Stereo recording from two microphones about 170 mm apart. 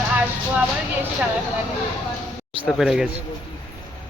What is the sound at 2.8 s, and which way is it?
Speech, centre (ahead or behind).